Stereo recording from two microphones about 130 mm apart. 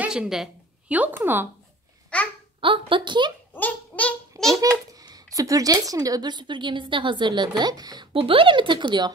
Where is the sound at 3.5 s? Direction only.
10° left (ahead or behind).